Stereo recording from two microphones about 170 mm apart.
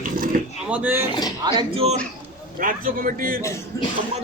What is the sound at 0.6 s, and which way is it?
Speech, 10° right (ahead or behind).